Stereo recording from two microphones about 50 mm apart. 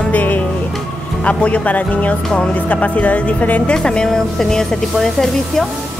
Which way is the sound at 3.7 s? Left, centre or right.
Centre.